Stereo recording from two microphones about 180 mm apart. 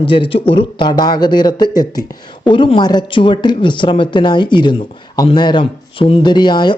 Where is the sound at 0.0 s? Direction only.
30° left (ahead or behind).